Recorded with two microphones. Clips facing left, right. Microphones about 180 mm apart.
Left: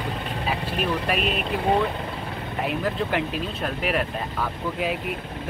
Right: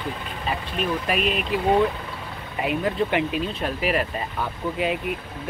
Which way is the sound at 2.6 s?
Centre (ahead or behind).